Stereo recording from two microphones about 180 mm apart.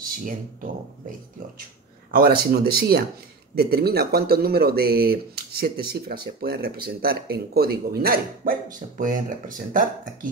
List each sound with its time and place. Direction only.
0.0 s speech: 50° right (ahead or behind)